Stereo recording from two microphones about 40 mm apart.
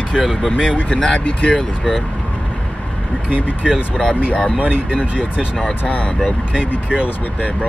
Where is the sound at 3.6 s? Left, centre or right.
Right.